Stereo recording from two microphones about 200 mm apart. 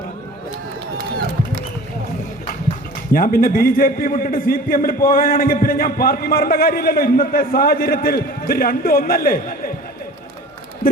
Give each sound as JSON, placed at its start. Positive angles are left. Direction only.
{"t": 3.1, "sound": "a man's voice", "side_deg": 45}